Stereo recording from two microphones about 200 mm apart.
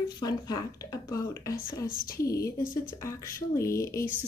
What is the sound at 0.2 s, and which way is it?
Speech, 20° left (ahead or behind).